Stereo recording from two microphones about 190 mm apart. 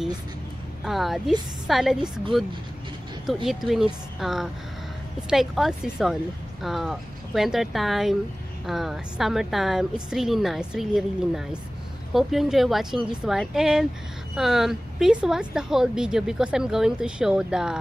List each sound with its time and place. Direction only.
0.8 s a woman's voice: centre (ahead or behind)